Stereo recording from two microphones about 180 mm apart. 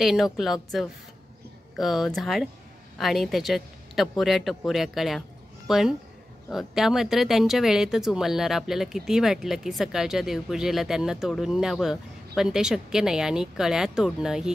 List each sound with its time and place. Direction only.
0.0 s a woman's voice: centre (ahead or behind)